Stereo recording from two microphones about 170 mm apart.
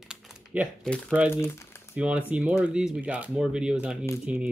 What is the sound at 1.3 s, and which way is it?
Speech, 15° left (ahead or behind).